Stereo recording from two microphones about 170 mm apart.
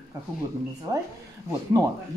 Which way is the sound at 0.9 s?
20° right (ahead or behind).